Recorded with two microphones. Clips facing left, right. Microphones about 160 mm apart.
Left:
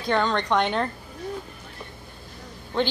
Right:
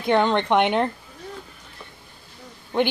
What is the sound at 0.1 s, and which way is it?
Speech, 20° right (ahead or behind).